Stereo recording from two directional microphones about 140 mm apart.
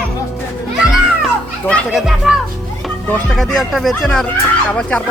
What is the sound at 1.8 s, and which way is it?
Speech, 5° right (ahead or behind).